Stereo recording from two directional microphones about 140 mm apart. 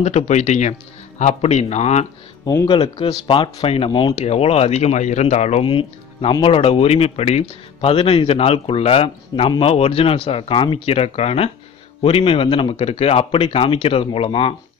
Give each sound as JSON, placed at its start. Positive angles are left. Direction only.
{"t": 0.0, "sound": "a man's voice", "side_deg": 55}
{"t": 2.4, "sound": "speech", "side_deg": 25}
{"t": 2.7, "sound": "a man's voice", "side_deg": 40}
{"t": 5.7, "sound": "a man's voice", "side_deg": 40}